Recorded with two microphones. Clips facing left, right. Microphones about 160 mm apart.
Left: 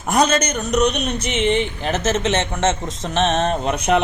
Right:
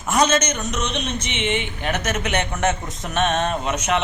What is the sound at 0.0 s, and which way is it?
A man's voice, 35° left (ahead or behind).